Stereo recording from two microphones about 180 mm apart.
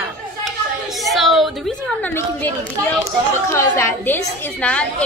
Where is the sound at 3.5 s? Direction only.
15° left (ahead or behind).